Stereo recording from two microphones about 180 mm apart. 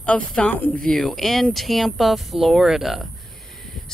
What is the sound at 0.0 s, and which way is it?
Speech, 5° left (ahead or behind).